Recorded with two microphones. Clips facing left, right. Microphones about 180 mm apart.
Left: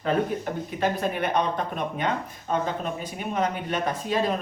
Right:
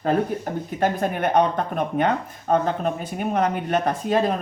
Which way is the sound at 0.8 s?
50° right (ahead or behind).